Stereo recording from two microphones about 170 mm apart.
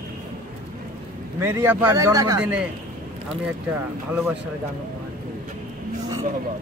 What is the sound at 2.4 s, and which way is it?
Speech, 5° right (ahead or behind).